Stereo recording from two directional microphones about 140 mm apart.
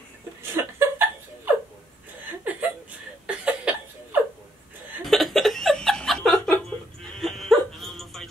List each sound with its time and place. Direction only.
0.4 s chuckle: 15° right (ahead or behind)
3.3 s a sound: 10° right (ahead or behind)
5.0 s chuckle: centre (ahead or behind)